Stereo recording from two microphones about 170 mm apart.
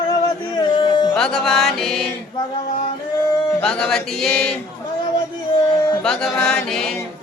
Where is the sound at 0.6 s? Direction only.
25° left (ahead or behind).